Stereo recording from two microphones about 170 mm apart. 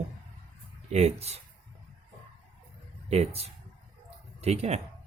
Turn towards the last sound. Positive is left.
turn(degrees=-40)  # may be behind; listen again after turning